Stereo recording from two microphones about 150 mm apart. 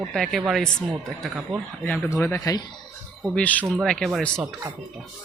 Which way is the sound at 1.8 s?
15° left (ahead or behind).